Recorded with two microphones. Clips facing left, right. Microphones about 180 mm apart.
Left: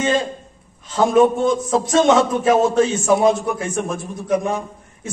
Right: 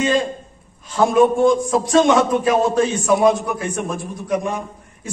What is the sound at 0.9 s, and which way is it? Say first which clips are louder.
A man's voice: even; 25° left (ahead or behind).